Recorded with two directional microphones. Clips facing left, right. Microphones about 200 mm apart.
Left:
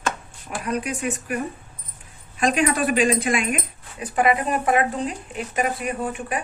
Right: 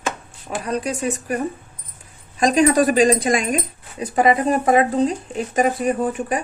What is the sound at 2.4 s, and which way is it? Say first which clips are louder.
Speech: right 6 dB; 40° right (ahead or behind).